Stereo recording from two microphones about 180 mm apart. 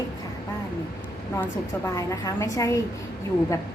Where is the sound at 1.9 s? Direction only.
20° left (ahead or behind).